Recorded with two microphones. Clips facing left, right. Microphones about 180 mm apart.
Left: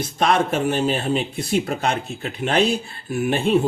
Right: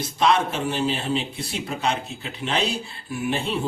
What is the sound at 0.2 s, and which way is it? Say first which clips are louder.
Speech: left 2 dB; 55° left (ahead or behind).